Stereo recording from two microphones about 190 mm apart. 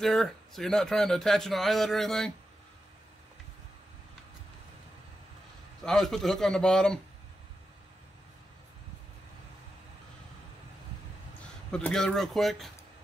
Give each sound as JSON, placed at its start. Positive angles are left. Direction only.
{"t": 0.0, "sound": "speech", "side_deg": 0}
{"t": 5.9, "sound": "speech", "side_deg": 0}
{"t": 11.7, "sound": "speech", "side_deg": 5}